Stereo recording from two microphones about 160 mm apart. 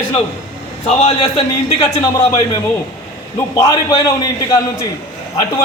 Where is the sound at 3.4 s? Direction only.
20° left (ahead or behind).